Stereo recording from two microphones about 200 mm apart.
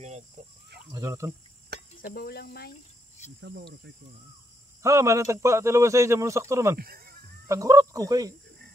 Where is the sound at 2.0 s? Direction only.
50° left (ahead or behind).